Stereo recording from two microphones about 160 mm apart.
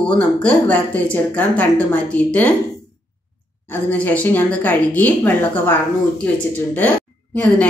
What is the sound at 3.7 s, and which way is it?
A woman's voice, 10° left (ahead or behind).